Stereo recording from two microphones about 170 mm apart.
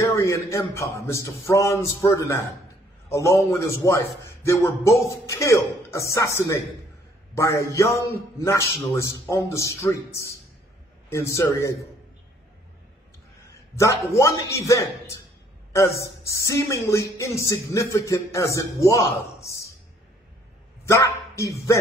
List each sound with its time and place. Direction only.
0.0 s speech: 20° left (ahead or behind)
13.7 s speech: 15° left (ahead or behind)
20.8 s speech: 20° left (ahead or behind)